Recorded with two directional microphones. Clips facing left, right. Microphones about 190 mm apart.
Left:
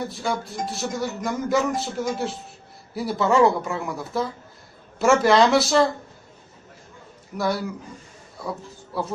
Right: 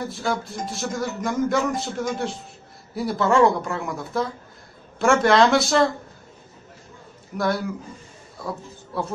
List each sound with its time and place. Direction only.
0.0 s a man's voice: centre (ahead or behind)
7.3 s a man's voice: centre (ahead or behind)
8.4 s a sound: centre (ahead or behind)